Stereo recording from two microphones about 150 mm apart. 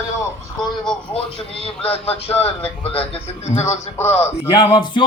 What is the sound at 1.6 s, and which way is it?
A man's voice, 40° left (ahead or behind).